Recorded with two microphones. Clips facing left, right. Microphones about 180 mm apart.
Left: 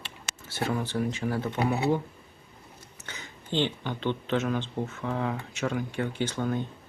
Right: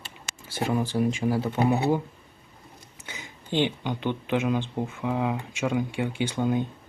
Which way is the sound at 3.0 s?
10° right (ahead or behind).